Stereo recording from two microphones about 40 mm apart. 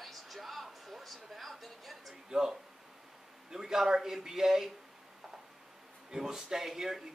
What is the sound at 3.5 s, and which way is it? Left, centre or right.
A man's voice, centre.